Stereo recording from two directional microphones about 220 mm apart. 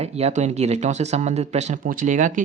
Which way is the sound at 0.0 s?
30° right (ahead or behind).